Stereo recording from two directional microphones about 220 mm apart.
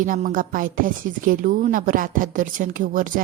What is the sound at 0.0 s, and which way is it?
A woman's voice, 35° right (ahead or behind).